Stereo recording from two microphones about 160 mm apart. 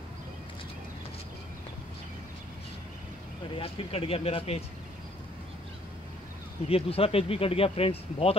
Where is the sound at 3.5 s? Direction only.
35° left (ahead or behind).